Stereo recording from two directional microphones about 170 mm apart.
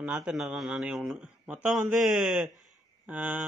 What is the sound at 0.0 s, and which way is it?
Speech, 5° right (ahead or behind).